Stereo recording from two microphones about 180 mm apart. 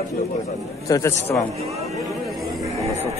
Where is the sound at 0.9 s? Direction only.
15° left (ahead or behind).